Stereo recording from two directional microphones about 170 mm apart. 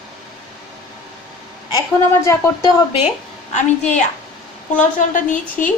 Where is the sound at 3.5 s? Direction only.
45° left (ahead or behind).